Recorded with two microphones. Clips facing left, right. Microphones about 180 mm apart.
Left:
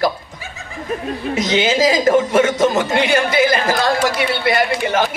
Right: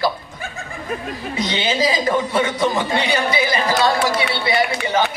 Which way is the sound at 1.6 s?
45° left (ahead or behind).